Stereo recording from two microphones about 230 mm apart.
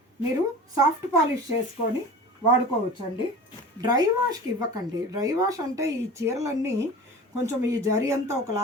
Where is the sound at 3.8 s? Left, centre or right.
Centre.